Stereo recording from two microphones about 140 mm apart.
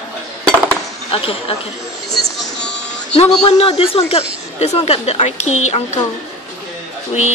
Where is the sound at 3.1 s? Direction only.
45° left (ahead or behind).